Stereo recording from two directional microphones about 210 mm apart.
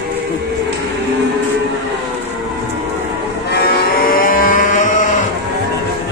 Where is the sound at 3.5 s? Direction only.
45° left (ahead or behind).